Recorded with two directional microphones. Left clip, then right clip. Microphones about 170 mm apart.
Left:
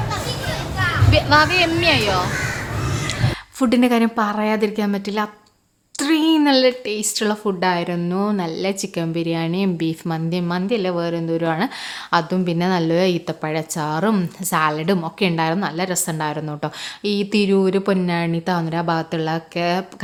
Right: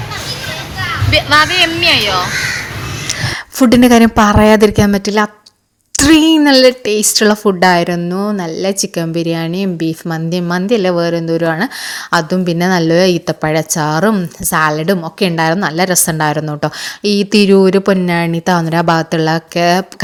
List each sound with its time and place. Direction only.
1.1 s speech: 5° right (ahead or behind)
3.1 s a woman's voice: 35° right (ahead or behind)
14.1 s a woman's voice: 20° right (ahead or behind)